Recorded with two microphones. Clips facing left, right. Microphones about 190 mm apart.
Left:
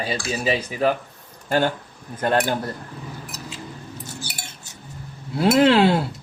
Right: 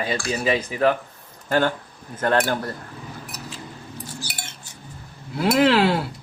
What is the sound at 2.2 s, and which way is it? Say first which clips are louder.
Speech: even; 15° left (ahead or behind).